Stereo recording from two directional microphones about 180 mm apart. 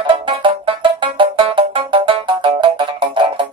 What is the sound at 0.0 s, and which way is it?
Music, 30° right (ahead or behind).